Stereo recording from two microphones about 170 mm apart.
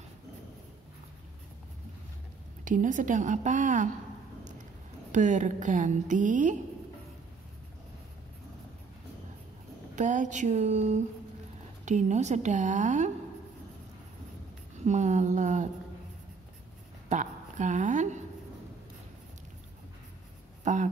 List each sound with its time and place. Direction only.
2.6 s a woman's voice: 50° right (ahead or behind)
5.1 s a woman's voice: 45° right (ahead or behind)
9.9 s a woman's voice: 45° right (ahead or behind)
14.9 s a woman's voice: 45° right (ahead or behind)
17.1 s a sound: 45° right (ahead or behind)
20.6 s speech: 45° right (ahead or behind)